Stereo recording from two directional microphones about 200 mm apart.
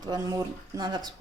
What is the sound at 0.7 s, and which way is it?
Speech, 20° right (ahead or behind).